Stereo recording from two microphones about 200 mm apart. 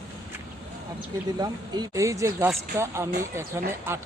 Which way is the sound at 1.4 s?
20° right (ahead or behind).